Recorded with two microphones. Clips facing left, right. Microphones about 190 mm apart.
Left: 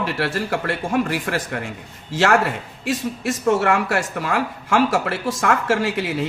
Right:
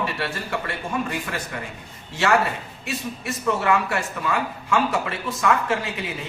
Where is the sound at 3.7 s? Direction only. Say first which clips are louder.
Left 3 dB; 80° left.